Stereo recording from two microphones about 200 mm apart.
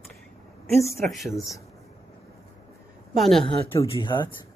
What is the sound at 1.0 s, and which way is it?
Speech, centre (ahead or behind).